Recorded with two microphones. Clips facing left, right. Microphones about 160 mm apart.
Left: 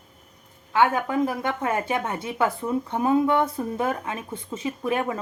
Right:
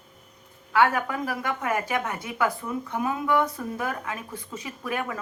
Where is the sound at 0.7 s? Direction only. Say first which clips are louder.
Left 1 dB; 25° left (ahead or behind).